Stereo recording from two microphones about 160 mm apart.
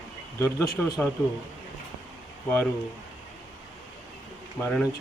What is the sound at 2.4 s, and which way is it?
Speech, 10° left (ahead or behind).